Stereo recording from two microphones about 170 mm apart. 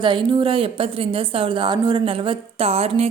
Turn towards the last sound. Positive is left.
turn(degrees=-35)  # may be behind; listen again after turning